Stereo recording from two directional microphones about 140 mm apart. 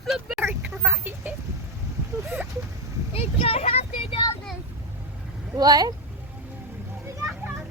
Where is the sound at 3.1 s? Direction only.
45° left (ahead or behind).